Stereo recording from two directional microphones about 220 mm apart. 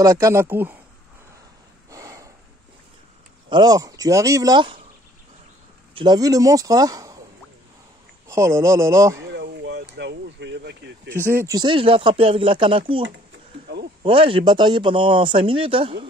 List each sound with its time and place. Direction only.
0.0 s speech: 15° right (ahead or behind)
1.9 s snort: 15° right (ahead or behind)
3.4 s speech: 20° right (ahead or behind)
5.9 s speech: 15° right (ahead or behind)
8.3 s speech: 15° right (ahead or behind)
9.3 s a sound: 50° right (ahead or behind)
11.2 s speech: 15° right (ahead or behind)
14.0 s speech: 25° right (ahead or behind)